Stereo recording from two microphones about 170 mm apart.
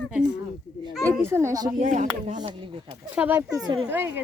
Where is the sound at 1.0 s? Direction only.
15° right (ahead or behind).